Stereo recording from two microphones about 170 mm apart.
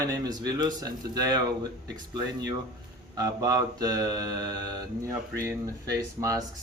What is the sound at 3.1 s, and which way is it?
Speech, 20° right (ahead or behind).